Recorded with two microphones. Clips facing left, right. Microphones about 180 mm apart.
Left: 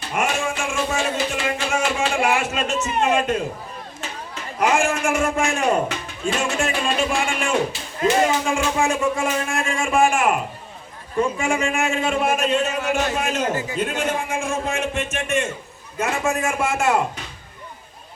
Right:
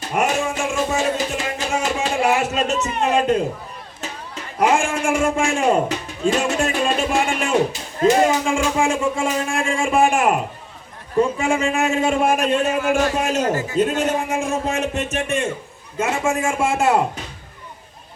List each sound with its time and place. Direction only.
0.0 s music: 40° right (ahead or behind)
2.8 s a man's voice: 35° right (ahead or behind)
4.6 s a man's voice: 30° right (ahead or behind)
8.4 s a man's voice: 30° right (ahead or behind)
11.2 s a man's voice: 35° right (ahead or behind)
16.0 s a man's voice: 25° right (ahead or behind)